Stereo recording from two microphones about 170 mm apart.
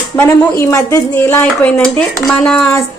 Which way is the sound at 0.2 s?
15° left (ahead or behind).